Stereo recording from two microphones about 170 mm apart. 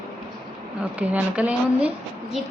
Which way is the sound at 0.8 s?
5° right (ahead or behind).